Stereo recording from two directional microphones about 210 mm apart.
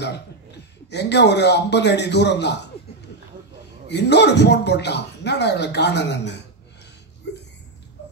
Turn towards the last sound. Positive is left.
turn(degrees=55)  # may be behind; listen again after turning